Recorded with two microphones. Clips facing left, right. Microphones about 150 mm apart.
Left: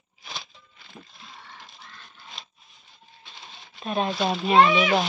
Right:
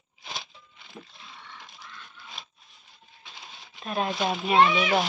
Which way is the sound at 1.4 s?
40° left (ahead or behind).